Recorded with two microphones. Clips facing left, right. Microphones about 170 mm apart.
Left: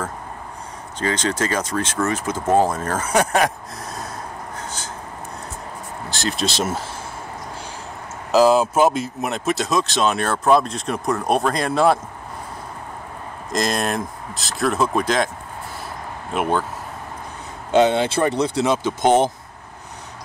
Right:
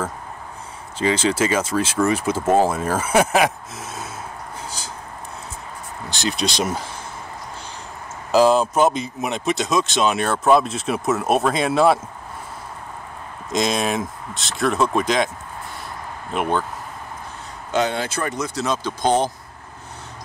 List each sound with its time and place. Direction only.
0.9 s speech: 5° right (ahead or behind)
6.0 s speech: centre (ahead or behind)
8.3 s speech: 5° left (ahead or behind)
13.5 s speech: centre (ahead or behind)
16.3 s speech: 5° left (ahead or behind)
17.6 s speech: 25° left (ahead or behind)